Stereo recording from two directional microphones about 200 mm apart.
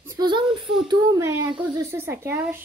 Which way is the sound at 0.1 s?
20° right (ahead or behind).